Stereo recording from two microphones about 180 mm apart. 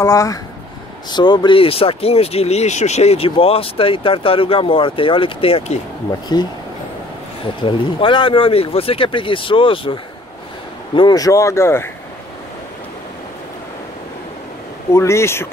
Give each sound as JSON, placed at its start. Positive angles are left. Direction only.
{"t": 0.0, "sound": "speech", "side_deg": 20}
{"t": 7.6, "sound": "speech", "side_deg": 30}
{"t": 11.0, "sound": "speech", "side_deg": 20}
{"t": 14.9, "sound": "speech", "side_deg": 15}